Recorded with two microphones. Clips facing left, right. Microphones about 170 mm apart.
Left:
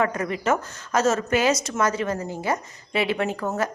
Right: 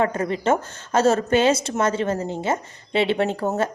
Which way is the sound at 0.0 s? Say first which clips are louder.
Right 2 dB; 30° right (ahead or behind).